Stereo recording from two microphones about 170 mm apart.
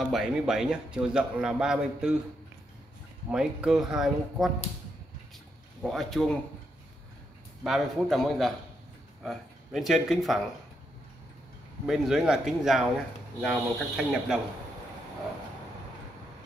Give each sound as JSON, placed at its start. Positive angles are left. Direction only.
{"t": 0.0, "sound": "a man's voice", "side_deg": 0}
{"t": 3.3, "sound": "a man's voice", "side_deg": -5}
{"t": 5.8, "sound": "a man's voice", "side_deg": 0}
{"t": 7.6, "sound": "a man's voice", "side_deg": 0}
{"t": 11.8, "sound": "a man's voice", "side_deg": -5}